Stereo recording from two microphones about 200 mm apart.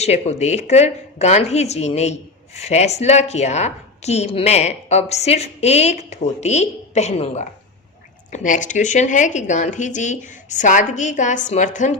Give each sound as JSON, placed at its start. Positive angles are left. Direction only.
{"t": 0.0, "sound": "speech", "side_deg": 35}